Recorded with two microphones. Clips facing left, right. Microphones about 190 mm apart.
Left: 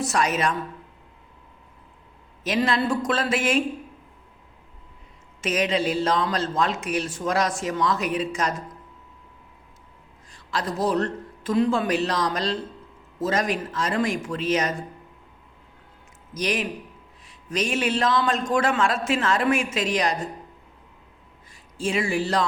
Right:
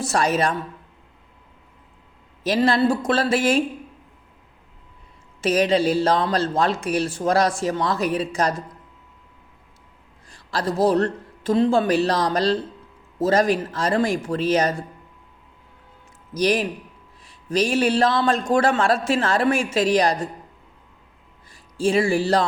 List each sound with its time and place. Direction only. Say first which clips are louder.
0.0 s speech: right 3 dB; 30° right (ahead or behind)
2.4 s speech: right 4 dB; 35° right (ahead or behind)
5.4 s speech: right 5 dB; 35° right (ahead or behind)
10.3 s speech: right 4 dB; 35° right (ahead or behind)
16.3 s speech: right 6 dB; 35° right (ahead or behind)
21.8 s speech: right 5 dB; 35° right (ahead or behind)